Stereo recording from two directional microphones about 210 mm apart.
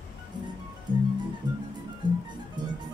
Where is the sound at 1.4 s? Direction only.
20° right (ahead or behind).